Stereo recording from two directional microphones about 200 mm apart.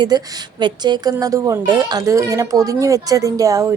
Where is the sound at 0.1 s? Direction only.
20° right (ahead or behind).